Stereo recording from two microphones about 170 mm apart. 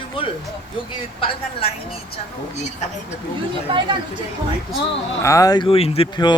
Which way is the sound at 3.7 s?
30° right (ahead or behind).